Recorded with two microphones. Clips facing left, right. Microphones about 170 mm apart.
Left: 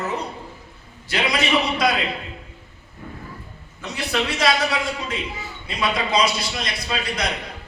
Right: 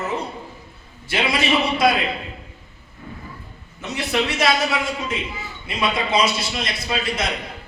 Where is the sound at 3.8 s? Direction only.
25° right (ahead or behind).